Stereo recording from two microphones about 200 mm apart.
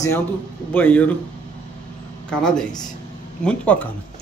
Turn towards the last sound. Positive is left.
turn(degrees=10)  # may be behind; listen again after turning